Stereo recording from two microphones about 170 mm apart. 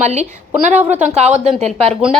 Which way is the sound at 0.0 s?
40° right (ahead or behind).